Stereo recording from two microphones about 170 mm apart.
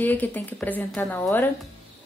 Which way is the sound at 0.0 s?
10° left (ahead or behind).